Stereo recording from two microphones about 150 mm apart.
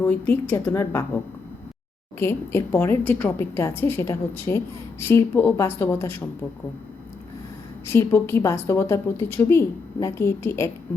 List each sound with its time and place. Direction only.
0.0 s a woman's voice: 15° left (ahead or behind)
7.9 s a woman's voice: 15° left (ahead or behind)